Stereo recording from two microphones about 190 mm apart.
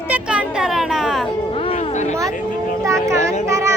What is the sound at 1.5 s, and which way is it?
Music, 30° left (ahead or behind).